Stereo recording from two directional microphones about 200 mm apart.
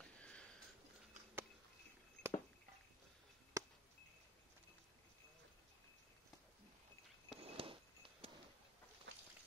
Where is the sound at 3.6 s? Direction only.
15° right (ahead or behind).